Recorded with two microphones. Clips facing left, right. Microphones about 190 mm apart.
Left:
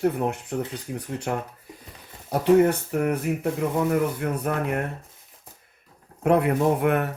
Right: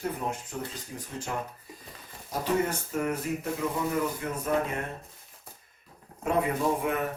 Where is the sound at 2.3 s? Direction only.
65° left (ahead or behind).